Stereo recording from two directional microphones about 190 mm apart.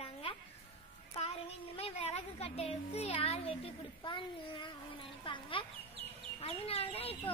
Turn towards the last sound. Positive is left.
turn(degrees=30)  # may be behind; listen again after turning